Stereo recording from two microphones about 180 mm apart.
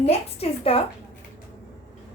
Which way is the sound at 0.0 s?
35° left (ahead or behind).